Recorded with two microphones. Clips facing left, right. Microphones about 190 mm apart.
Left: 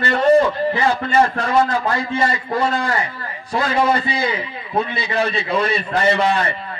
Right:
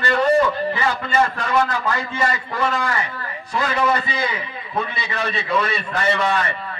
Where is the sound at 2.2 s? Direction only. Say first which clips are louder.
Left 4 dB; 30° left (ahead or behind).